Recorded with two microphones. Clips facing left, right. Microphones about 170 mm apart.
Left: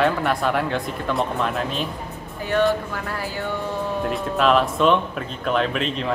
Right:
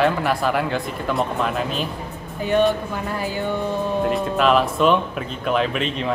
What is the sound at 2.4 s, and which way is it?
A woman's voice, 20° right (ahead or behind).